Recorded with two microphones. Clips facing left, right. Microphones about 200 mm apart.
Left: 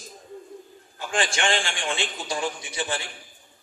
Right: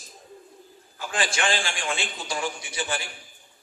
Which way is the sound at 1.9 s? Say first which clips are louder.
Left 2 dB; 30° left (ahead or behind).